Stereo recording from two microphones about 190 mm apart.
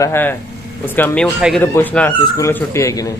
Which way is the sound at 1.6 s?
10° left (ahead or behind).